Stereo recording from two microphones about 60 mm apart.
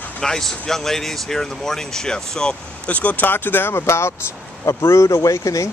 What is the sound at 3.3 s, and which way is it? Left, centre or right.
Speech, left.